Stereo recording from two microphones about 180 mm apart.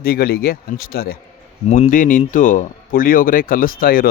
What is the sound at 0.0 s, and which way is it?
Speech, 60° left (ahead or behind).